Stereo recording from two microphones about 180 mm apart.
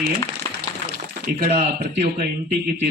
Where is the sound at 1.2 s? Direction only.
55° right (ahead or behind).